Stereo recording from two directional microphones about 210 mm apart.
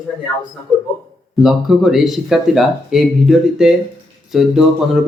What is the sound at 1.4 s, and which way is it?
Speech, centre (ahead or behind).